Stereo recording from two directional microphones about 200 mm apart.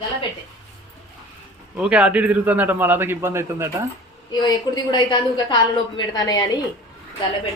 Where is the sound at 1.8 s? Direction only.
5° right (ahead or behind).